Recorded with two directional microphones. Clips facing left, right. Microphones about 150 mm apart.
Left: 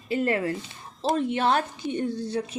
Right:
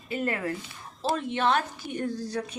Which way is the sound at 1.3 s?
40° left (ahead or behind).